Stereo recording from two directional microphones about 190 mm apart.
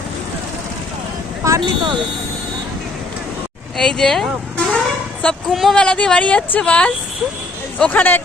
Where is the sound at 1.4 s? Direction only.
20° right (ahead or behind).